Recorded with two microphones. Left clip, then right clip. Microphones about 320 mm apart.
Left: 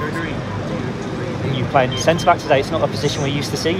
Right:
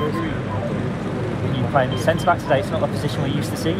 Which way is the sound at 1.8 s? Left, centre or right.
Left.